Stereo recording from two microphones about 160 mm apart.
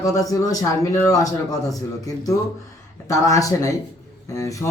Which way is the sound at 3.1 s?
20° left (ahead or behind).